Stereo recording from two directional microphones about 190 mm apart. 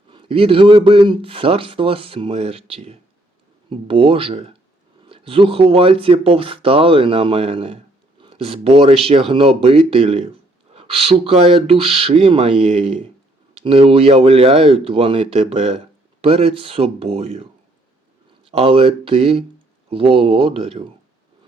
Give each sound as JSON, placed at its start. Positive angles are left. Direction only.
{"t": 0.1, "sound": "speech", "side_deg": -30}
{"t": 18.5, "sound": "speech", "side_deg": -30}